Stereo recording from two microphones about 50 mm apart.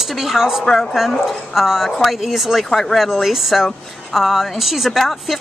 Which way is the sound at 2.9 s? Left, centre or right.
Centre.